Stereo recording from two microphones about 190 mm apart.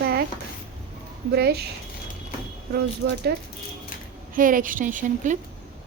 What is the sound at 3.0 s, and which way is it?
Speech, 70° right (ahead or behind).